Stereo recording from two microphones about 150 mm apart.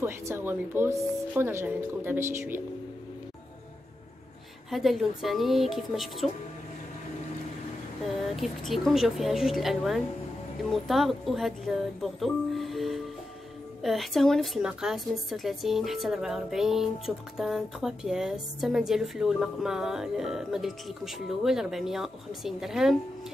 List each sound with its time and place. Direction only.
0.0 s speech: 15° right (ahead or behind)
4.6 s a woman's voice: centre (ahead or behind)
8.4 s a woman's voice: centre (ahead or behind)